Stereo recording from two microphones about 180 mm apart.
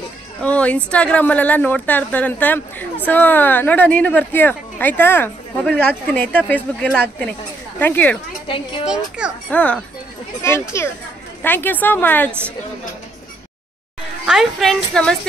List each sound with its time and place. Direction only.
0.4 s a woman's voice: 5° left (ahead or behind)
8.5 s speech: 30° left (ahead or behind)
8.8 s a woman's voice: 5° right (ahead or behind)
9.5 s a woman's voice: 10° left (ahead or behind)
14.2 s a woman's voice: centre (ahead or behind)